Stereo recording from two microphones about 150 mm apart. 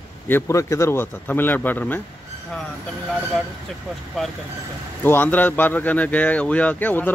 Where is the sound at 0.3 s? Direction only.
20° left (ahead or behind).